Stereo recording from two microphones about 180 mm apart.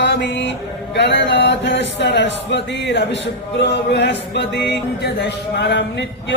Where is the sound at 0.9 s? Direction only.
75° left (ahead or behind).